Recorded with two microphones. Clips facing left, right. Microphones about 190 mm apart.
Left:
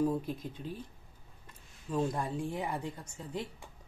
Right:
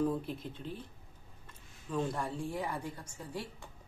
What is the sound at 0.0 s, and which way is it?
Speech, 10° left (ahead or behind).